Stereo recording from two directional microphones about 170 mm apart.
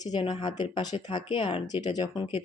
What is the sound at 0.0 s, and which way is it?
Speech, 25° left (ahead or behind).